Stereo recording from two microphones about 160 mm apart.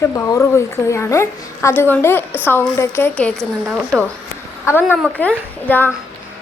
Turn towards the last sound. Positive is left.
turn(degrees=10)  # may be behind; listen again after turning